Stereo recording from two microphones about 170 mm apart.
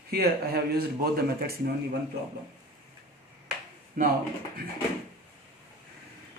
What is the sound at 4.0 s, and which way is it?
Speech, 50° right (ahead or behind).